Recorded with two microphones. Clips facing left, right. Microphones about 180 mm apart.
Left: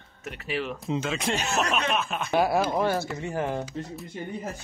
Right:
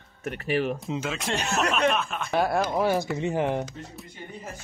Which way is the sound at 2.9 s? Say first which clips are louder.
Right 3 dB; 15° right (ahead or behind).